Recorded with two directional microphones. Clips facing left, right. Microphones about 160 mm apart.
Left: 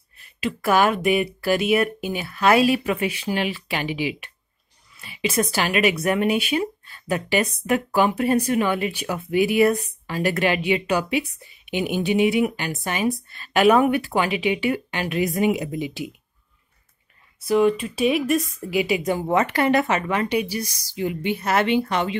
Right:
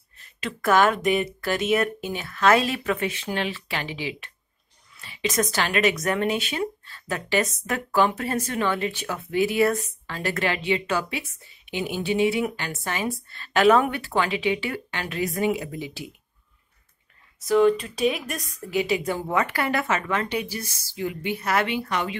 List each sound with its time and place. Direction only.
0.2 s a woman's voice: 10° left (ahead or behind)
17.5 s speech: 10° left (ahead or behind); by 22.1 s 30° left (ahead or behind)